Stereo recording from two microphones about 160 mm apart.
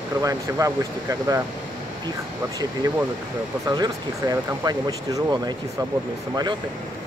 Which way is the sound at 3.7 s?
25° right (ahead or behind).